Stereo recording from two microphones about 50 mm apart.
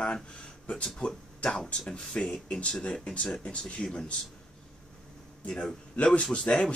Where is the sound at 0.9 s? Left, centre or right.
Centre.